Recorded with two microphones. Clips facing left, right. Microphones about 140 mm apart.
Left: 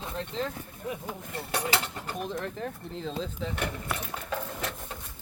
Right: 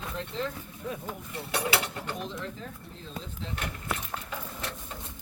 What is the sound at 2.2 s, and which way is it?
Speech, 60° left (ahead or behind).